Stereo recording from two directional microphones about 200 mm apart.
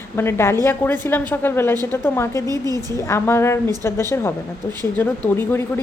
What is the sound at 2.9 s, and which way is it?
A woman's voice, 15° left (ahead or behind).